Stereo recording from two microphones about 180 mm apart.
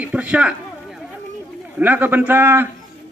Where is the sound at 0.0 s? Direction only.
10° right (ahead or behind).